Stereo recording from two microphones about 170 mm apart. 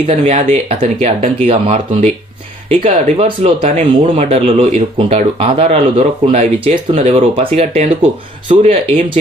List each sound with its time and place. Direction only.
0.1 s speech: 35° right (ahead or behind)